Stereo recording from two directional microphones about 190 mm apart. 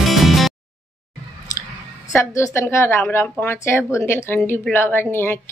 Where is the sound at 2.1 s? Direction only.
15° left (ahead or behind).